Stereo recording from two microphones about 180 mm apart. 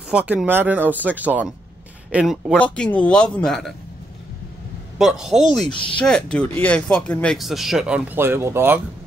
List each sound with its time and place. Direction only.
0.1 s speech: 5° right (ahead or behind)
2.5 s speech: 5° left (ahead or behind)
4.9 s speech: centre (ahead or behind)
5.7 s speech: 30° left (ahead or behind)
5.9 s speech: 5° left (ahead or behind); by 8.7 s 15° right (ahead or behind)